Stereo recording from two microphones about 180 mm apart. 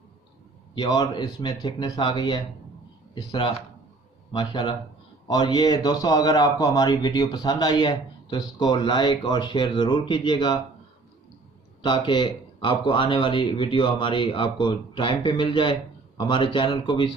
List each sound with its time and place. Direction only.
0.7 s speech: 20° left (ahead or behind)
11.8 s speech: 25° left (ahead or behind)